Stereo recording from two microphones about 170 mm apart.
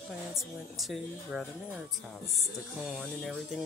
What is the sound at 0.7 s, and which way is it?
Speech, centre (ahead or behind).